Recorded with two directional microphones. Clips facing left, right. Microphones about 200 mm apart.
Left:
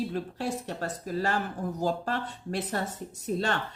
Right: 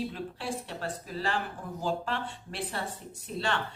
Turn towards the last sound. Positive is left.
turn(degrees=40)  # may be behind; listen again after turning